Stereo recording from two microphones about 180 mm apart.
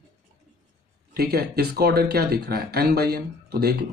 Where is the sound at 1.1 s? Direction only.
60° right (ahead or behind).